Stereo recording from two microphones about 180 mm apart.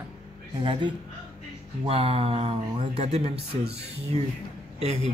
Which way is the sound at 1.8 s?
35° right (ahead or behind).